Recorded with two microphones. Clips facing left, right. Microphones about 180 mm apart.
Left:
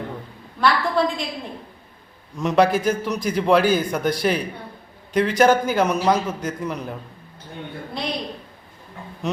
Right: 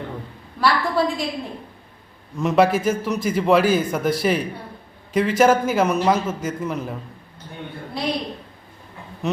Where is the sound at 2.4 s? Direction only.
5° right (ahead or behind).